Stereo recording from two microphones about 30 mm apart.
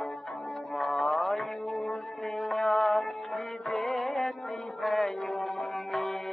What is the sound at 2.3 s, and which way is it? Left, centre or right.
Music, centre.